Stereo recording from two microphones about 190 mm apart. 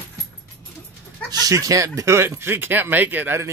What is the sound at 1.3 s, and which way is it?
Speech, 20° right (ahead or behind).